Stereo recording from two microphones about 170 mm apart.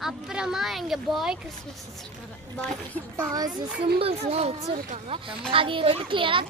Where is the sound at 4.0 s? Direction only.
35° right (ahead or behind).